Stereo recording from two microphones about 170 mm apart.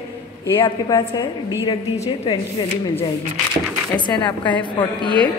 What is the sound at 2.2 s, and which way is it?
Speech, 35° left (ahead or behind).